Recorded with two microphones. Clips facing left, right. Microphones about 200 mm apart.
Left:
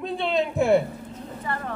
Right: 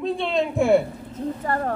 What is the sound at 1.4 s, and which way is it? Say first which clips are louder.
Speech: right 4 dB; 45° right (ahead or behind).